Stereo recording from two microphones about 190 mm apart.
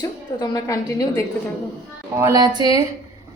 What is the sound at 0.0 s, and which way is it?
A woman's voice, 20° left (ahead or behind).